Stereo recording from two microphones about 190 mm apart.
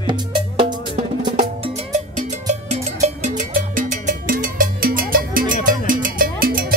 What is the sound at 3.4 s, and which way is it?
Music, 40° right (ahead or behind).